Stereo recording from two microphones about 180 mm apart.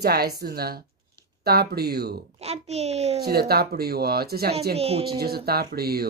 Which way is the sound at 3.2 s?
60° right (ahead or behind).